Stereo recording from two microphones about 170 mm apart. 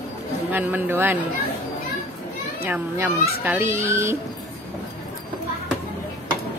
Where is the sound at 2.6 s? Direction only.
15° right (ahead or behind).